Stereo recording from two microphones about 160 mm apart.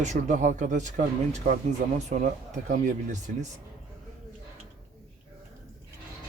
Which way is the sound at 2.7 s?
55° right (ahead or behind).